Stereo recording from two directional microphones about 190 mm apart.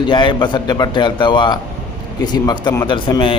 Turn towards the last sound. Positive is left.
turn(degrees=25)  # may be behind; listen again after turning